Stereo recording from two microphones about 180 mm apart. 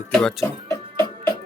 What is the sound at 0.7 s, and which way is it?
Music, 20° left (ahead or behind).